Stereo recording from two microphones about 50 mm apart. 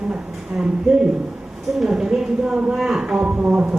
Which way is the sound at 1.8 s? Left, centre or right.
Centre.